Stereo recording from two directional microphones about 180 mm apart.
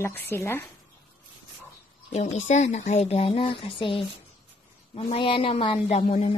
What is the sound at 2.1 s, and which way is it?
Speech, 40° left (ahead or behind).